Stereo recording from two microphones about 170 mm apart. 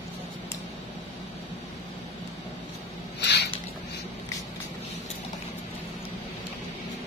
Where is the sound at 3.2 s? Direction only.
85° left.